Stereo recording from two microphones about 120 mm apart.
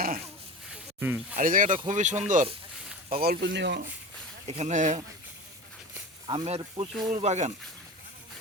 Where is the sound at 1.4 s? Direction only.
90° right.